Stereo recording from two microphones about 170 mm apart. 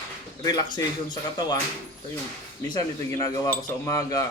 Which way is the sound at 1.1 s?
25° left (ahead or behind).